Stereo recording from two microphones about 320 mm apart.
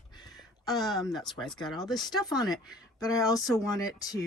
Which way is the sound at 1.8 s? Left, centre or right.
Centre.